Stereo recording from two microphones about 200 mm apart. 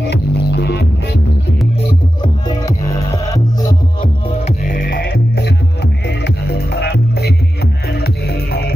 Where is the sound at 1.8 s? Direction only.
20° left (ahead or behind).